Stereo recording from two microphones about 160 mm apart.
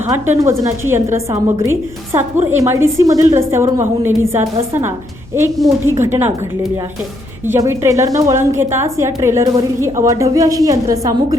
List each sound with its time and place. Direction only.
0.0 s a woman's voice: 20° right (ahead or behind)
7.4 s a woman's voice: 15° right (ahead or behind)